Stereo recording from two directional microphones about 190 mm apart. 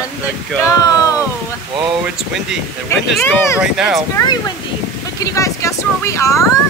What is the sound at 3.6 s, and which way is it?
Speech, 5° right (ahead or behind).